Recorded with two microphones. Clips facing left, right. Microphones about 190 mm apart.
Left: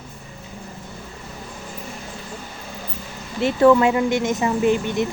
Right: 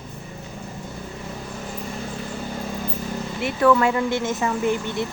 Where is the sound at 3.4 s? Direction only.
25° left (ahead or behind).